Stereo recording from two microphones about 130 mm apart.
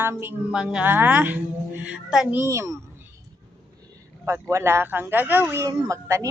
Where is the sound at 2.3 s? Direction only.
20° right (ahead or behind).